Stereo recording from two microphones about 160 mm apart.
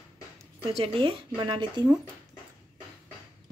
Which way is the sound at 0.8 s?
35° right (ahead or behind).